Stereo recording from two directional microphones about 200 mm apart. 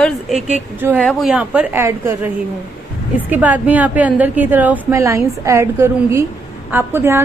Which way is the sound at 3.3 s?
10° right (ahead or behind).